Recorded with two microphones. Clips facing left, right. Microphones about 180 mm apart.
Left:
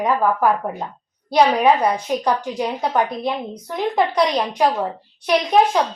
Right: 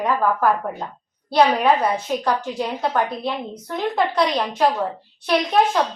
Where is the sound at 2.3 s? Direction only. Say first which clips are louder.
Left 2 dB; 15° left (ahead or behind).